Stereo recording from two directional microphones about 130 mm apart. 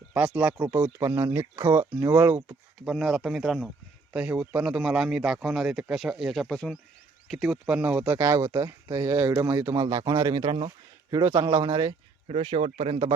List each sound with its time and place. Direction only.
0.1 s speech: 10° right (ahead or behind)
0.9 s speech: 25° right (ahead or behind)
2.8 s a man's voice: 5° right (ahead or behind)
7.7 s speech: 10° right (ahead or behind)
8.2 s speech: 25° right (ahead or behind)
12.3 s speech: 50° right (ahead or behind)